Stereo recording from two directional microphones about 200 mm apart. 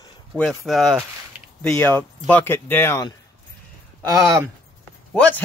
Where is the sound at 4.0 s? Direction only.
20° right (ahead or behind).